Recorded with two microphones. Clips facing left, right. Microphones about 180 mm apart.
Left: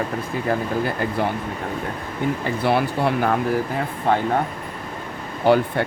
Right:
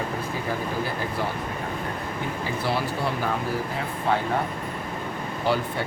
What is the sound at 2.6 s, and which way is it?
Speech, 60° left (ahead or behind).